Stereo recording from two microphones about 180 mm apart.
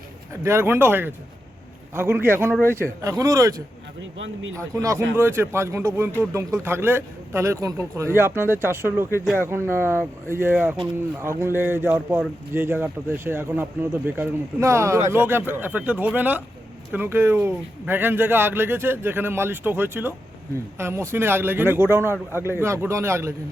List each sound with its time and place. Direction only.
0.4 s speech: 15° right (ahead or behind)
4.5 s speech: 20° right (ahead or behind)